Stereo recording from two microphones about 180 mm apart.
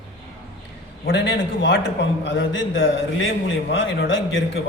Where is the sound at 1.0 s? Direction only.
90° left.